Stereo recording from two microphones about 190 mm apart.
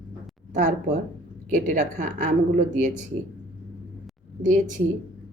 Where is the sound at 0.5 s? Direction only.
40° right (ahead or behind).